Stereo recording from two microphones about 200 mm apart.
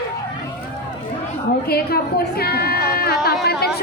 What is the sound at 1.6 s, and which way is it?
A woman's voice, 50° left (ahead or behind).